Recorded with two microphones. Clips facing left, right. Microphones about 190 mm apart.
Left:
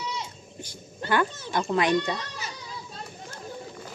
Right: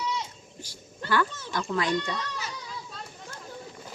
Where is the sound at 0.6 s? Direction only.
20° left (ahead or behind).